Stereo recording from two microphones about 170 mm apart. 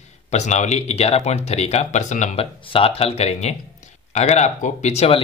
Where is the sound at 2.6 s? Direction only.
30° left (ahead or behind).